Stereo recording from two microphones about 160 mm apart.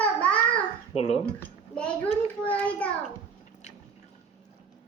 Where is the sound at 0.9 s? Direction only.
40° left (ahead or behind).